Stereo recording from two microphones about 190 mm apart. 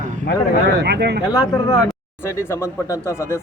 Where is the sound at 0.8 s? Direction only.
60° right (ahead or behind).